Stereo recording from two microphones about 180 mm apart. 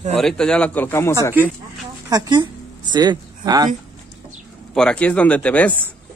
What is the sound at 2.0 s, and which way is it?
Speech, 20° right (ahead or behind).